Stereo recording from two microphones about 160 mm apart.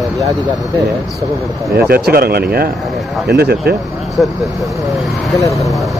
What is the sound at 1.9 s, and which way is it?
Speech, 70° right (ahead or behind).